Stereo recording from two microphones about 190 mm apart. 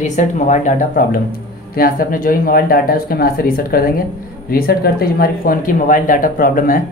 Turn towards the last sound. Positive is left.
turn(degrees=50)  # may be behind; listen again after turning